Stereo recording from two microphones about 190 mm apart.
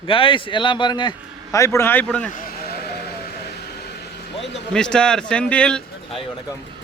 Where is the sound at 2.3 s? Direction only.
50° left (ahead or behind).